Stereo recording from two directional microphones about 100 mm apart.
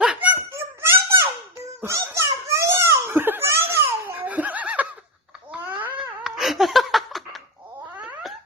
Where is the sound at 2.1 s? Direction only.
25° right (ahead or behind).